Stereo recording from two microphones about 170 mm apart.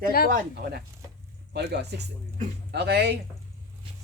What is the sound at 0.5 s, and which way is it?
Speech, 70° right (ahead or behind).